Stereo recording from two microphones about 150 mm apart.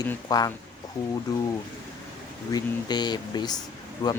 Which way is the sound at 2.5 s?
30° left (ahead or behind).